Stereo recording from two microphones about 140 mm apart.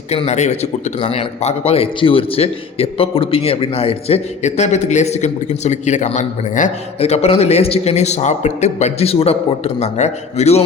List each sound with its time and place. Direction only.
0.1 s a man's voice: 50° left (ahead or behind)
7.0 s a man's voice: 50° left (ahead or behind)